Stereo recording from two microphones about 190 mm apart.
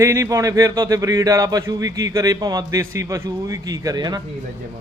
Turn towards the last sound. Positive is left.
turn(degrees=-20)  # may be behind; listen again after turning